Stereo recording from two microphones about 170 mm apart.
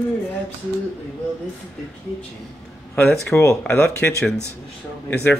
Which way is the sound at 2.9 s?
10° left (ahead or behind).